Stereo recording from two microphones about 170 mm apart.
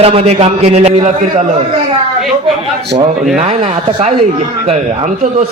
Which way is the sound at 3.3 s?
40° right (ahead or behind).